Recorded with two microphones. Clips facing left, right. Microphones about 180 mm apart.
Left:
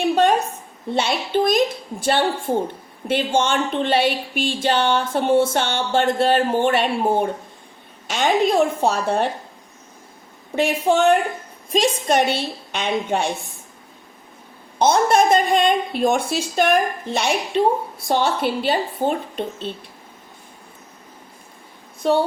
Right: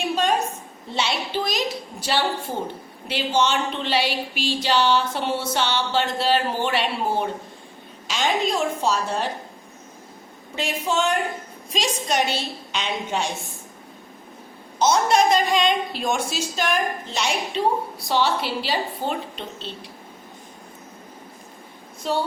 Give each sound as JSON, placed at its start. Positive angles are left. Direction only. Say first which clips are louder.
{"t": 0.1, "sound": "a sound", "louder": "left 4 dB", "side_deg": 60}
{"t": 8.0, "sound": "a woman's voice", "louder": "left 5 dB", "side_deg": 55}
{"t": 10.5, "sound": "a woman's voice", "louder": "left 7 dB", "side_deg": 55}
{"t": 14.8, "sound": "a woman's voice", "louder": "left 3 dB", "side_deg": 55}
{"t": 18.1, "sound": "a sound", "louder": "left 3 dB", "side_deg": 50}
{"t": 22.0, "sound": "a woman's voice", "louder": "left 7 dB", "side_deg": 60}